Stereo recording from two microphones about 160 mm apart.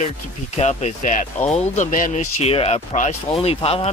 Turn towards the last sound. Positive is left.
turn(degrees=35)  # may be behind; listen again after turning